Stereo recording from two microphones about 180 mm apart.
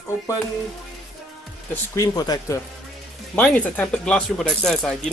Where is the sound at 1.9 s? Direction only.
20° left (ahead or behind).